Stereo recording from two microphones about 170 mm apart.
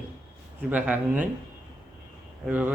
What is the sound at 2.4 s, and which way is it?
Speech, 10° right (ahead or behind).